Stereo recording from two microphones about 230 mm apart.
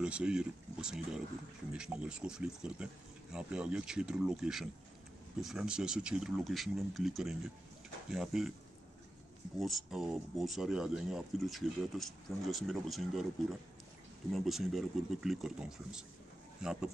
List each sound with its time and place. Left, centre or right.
0.0 s speech: centre
9.6 s speech: centre